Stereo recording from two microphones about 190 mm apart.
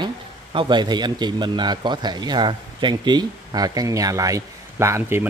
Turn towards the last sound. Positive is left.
turn(degrees=-15)  # may be behind; listen again after turning